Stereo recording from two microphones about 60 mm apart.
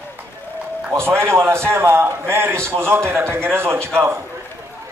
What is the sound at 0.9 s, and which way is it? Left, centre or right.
A man's voice, right.